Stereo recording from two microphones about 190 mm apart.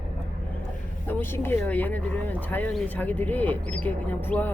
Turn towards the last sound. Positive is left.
turn(degrees=10)  # may be behind; listen again after turning